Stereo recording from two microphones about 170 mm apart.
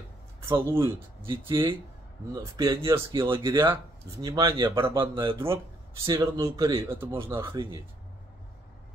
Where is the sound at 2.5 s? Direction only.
20° right (ahead or behind).